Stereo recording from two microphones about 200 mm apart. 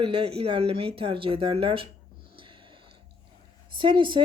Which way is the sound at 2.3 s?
25° right (ahead or behind).